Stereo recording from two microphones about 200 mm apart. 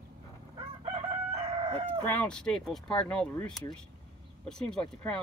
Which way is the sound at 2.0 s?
5° left (ahead or behind).